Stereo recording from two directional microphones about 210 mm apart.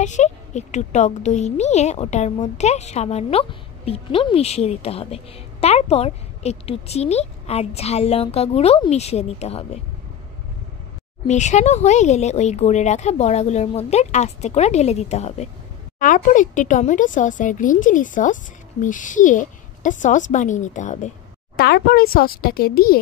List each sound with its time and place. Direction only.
0.0 s a woman's voice: 35° left (ahead or behind)
11.2 s a woman's voice: 35° left (ahead or behind)
21.5 s speech: 50° left (ahead or behind)